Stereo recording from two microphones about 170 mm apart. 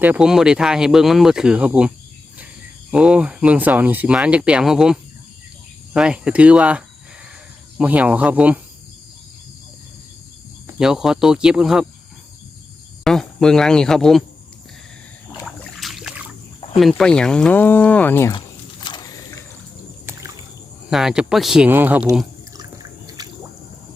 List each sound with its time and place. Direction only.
0.0 s speech: 5° right (ahead or behind)
2.9 s speech: 5° right (ahead or behind)
10.8 s speech: 5° right (ahead or behind)
13.1 s speech: 5° left (ahead or behind)
15.4 s rowboat: centre (ahead or behind)
17.0 s speech: 5° left (ahead or behind)
18.3 s a sound: 30° left (ahead or behind)
20.9 s speech: 5° right (ahead or behind)
23.0 s squish: 20° right (ahead or behind)